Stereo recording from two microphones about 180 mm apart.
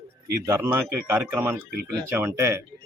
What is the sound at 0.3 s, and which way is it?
Speech, 15° right (ahead or behind).